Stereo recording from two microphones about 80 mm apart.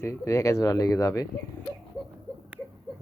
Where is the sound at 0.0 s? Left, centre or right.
Left.